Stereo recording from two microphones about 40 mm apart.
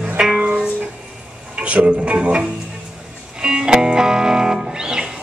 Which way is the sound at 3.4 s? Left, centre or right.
Centre.